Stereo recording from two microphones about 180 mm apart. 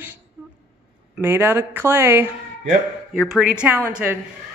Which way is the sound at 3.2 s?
Centre (ahead or behind).